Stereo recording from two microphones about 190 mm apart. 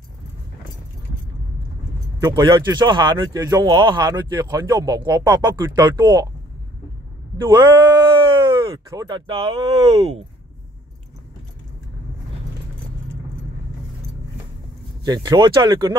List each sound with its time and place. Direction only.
2.1 s speech: 20° right (ahead or behind)
7.4 s speech: 25° right (ahead or behind)
15.0 s speech: 20° right (ahead or behind)